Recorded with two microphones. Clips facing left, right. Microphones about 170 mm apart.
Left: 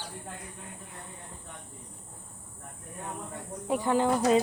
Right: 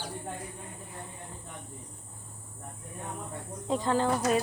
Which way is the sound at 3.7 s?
10° left (ahead or behind).